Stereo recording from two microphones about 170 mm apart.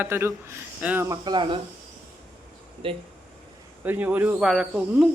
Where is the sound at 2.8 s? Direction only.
30° right (ahead or behind).